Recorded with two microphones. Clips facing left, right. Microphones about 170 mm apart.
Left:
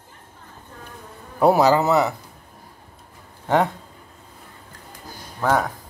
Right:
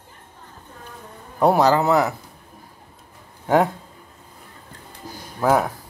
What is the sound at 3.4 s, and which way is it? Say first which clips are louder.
Speech: right 2 dB; 5° right (ahead or behind).